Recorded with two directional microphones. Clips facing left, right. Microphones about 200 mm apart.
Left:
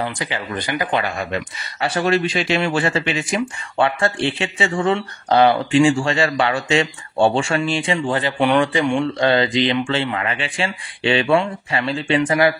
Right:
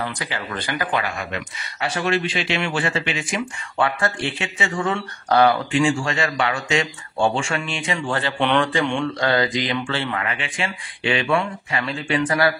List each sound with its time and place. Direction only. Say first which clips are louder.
0.0 s speech: left 3 dB; 20° left (ahead or behind)
1.0 s speech: left 4 dB; 35° left (ahead or behind)
3.7 s speech: left 3 dB; 25° left (ahead or behind)
8.4 s speech: left 3 dB; 5° left (ahead or behind)
9.2 s speech: left 4 dB; 25° left (ahead or behind)
12.3 s speech: left 3 dB; 20° left (ahead or behind)